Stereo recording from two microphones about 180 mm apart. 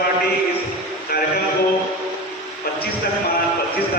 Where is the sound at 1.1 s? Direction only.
60° left (ahead or behind).